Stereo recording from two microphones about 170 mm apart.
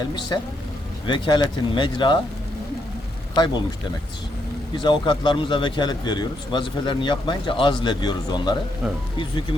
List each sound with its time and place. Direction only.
0.3 s a man's voice: 25° left (ahead or behind)
3.3 s a man's voice: 25° left (ahead or behind)
4.8 s a man's voice: 25° left (ahead or behind)